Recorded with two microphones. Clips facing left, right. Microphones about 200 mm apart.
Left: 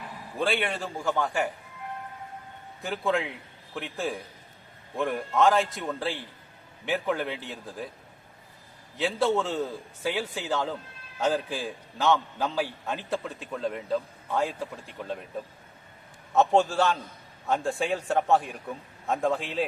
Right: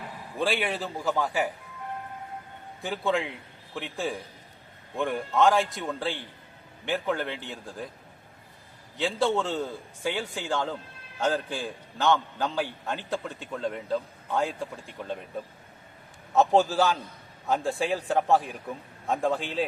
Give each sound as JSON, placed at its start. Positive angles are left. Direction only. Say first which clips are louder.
{"t": 0.3, "sound": "a man's voice", "louder": "even", "side_deg": 0}
{"t": 2.8, "sound": "a man's voice", "louder": "even", "side_deg": 0}
{"t": 9.0, "sound": "a man's voice", "louder": "left 1 dB", "side_deg": 0}